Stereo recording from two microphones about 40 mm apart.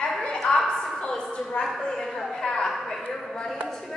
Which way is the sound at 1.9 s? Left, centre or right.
Centre.